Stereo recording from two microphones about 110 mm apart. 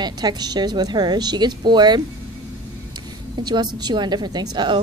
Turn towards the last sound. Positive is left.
turn(degrees=-40)  # may be behind; listen again after turning